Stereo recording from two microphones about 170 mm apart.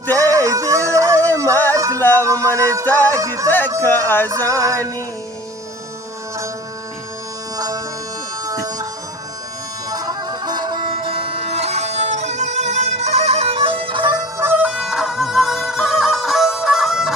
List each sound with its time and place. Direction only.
0.1 s music: 20° right (ahead or behind)
2.0 s music: 10° left (ahead or behind)
2.2 s music: 20° right (ahead or behind)
2.8 s speech: 10° left (ahead or behind)
3.2 s music: 20° right (ahead or behind)
3.8 s speech: 10° left (ahead or behind)
7.5 s music: 20° right (ahead or behind)
8.4 s bagpipes: 20° right (ahead or behind)
9.9 s music: 25° right (ahead or behind)
14.3 s music: 10° right (ahead or behind)